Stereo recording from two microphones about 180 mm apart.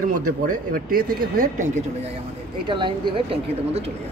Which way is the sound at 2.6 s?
25° right (ahead or behind).